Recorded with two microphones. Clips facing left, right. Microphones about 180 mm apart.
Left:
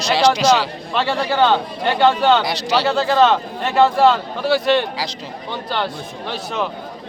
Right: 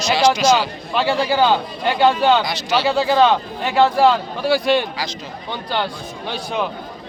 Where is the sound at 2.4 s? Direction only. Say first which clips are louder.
Left 2 dB; 35° left (ahead or behind).